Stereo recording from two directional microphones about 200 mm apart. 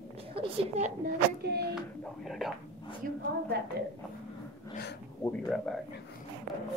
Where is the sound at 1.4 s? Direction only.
55° right (ahead or behind).